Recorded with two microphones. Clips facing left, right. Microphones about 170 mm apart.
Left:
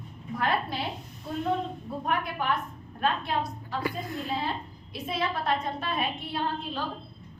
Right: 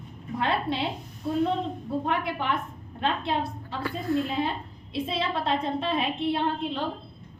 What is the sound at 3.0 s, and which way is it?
Speech, 25° right (ahead or behind).